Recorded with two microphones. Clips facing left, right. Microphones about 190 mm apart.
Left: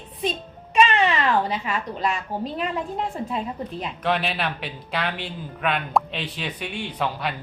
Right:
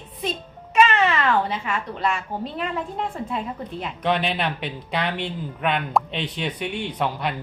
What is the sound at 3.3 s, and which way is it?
Speech, 30° left (ahead or behind).